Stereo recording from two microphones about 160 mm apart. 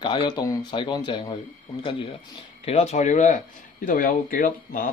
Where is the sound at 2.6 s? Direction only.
40° left (ahead or behind).